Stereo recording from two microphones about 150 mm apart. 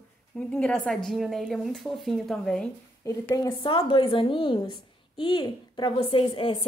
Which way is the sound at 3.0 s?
20° left (ahead or behind).